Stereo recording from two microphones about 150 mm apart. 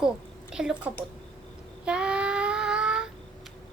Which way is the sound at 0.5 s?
5° right (ahead or behind).